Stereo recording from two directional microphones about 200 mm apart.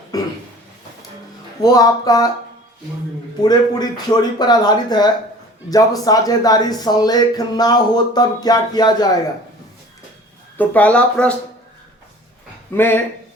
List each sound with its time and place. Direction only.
0.1 s a sound: 20° left (ahead or behind)
1.6 s speech: 20° left (ahead or behind)
3.4 s speech: 20° left (ahead or behind)
10.6 s speech: 5° left (ahead or behind)
12.7 s speech: 10° left (ahead or behind)